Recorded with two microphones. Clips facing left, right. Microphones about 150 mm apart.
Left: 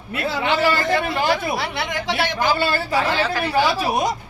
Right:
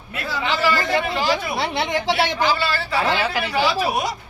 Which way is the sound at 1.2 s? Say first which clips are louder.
Left 1 dB; 60° left (ahead or behind).